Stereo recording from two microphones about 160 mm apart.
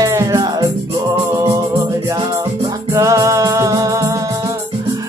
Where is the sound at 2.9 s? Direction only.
20° right (ahead or behind).